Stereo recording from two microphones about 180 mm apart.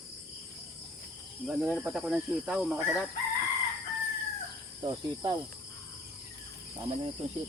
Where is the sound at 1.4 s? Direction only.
Centre (ahead or behind).